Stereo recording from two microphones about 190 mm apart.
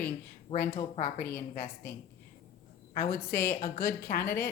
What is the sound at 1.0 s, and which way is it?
Speech, 50° left (ahead or behind).